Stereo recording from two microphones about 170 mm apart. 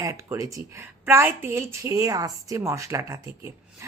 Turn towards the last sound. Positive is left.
turn(degrees=-15)  # may be behind; listen again after turning